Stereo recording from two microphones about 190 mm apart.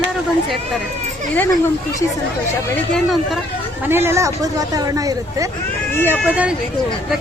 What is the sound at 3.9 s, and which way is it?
A woman's voice, 10° right (ahead or behind).